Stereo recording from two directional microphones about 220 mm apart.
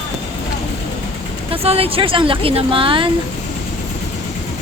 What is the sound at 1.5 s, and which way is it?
Speech, 25° right (ahead or behind).